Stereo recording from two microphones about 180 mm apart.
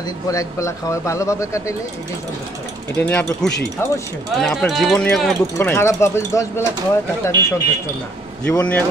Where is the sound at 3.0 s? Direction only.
10° left (ahead or behind).